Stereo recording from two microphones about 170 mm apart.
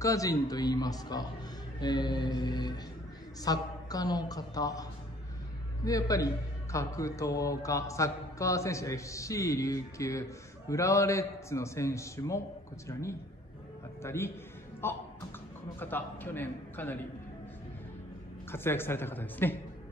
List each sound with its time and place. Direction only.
0.0 s speech: 20° left (ahead or behind)
5.9 s a man's voice: 20° left (ahead or behind)
14.0 s a man's voice: 15° left (ahead or behind)
18.5 s a man's voice: 15° left (ahead or behind)